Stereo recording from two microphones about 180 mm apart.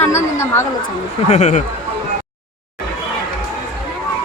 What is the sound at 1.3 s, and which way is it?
Speech, 40° left (ahead or behind).